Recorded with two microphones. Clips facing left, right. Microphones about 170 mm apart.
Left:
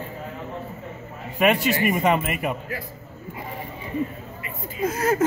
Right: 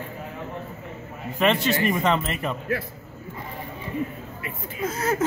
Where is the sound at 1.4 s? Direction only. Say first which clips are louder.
Left 1 dB; 10° left (ahead or behind).